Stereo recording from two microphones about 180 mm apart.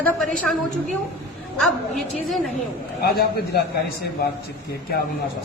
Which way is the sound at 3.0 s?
55° left (ahead or behind).